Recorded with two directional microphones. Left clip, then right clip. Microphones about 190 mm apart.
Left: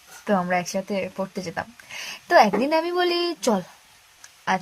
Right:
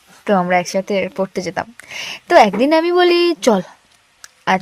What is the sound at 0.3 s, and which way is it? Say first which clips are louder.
Speech: right 8 dB; 50° right (ahead or behind).